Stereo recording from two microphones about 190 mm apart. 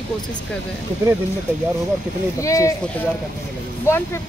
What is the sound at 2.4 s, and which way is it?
Speech, 15° left (ahead or behind).